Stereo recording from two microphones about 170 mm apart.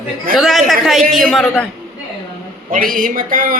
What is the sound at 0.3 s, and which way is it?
A man's voice, centre (ahead or behind).